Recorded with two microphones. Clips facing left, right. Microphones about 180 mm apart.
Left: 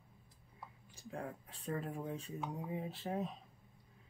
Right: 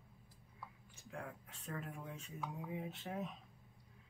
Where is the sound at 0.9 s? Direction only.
35° left (ahead or behind).